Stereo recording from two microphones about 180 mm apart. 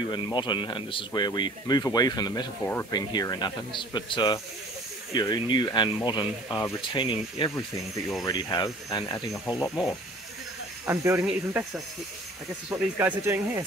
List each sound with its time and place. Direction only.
0.1 s speech: 25° left (ahead or behind)
9.3 s speech: centre (ahead or behind)
10.9 s speech: 15° right (ahead or behind)
11.2 s speech: 5° right (ahead or behind)